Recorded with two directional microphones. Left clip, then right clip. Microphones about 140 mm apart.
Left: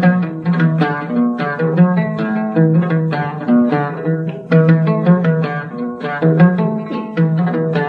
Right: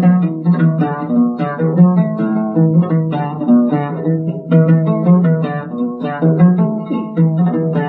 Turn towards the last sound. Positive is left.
turn(degrees=30)  # may be behind; listen again after turning